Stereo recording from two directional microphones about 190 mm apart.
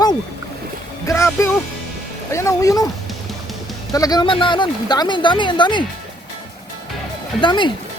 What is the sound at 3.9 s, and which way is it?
Speech, 20° left (ahead or behind).